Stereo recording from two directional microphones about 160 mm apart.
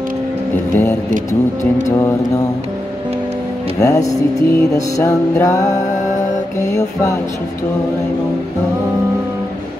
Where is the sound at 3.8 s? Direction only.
20° left (ahead or behind).